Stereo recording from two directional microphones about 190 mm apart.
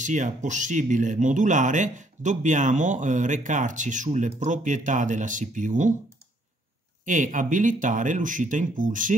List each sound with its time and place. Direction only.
0.0 s speech: 40° right (ahead or behind)
7.1 s speech: 40° right (ahead or behind)